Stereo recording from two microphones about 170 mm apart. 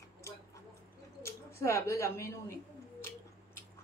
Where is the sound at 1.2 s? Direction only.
15° left (ahead or behind).